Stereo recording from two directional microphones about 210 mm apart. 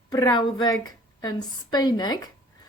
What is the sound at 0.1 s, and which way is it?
A woman's voice, 20° left (ahead or behind).